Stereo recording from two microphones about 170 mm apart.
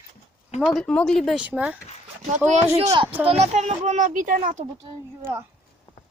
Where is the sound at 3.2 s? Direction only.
35° right (ahead or behind).